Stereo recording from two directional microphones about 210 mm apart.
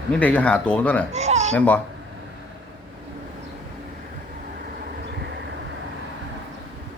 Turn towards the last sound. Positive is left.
turn(degrees=-55)  # may be behind; listen again after turning